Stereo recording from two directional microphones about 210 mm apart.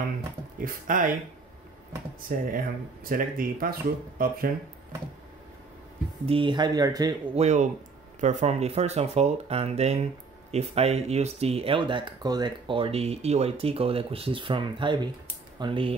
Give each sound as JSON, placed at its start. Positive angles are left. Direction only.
{"t": 0.6, "sound": "speech", "side_deg": -40}
{"t": 2.2, "sound": "speech", "side_deg": -40}
{"t": 6.2, "sound": "speech", "side_deg": -25}
{"t": 7.3, "sound": "speech", "side_deg": -35}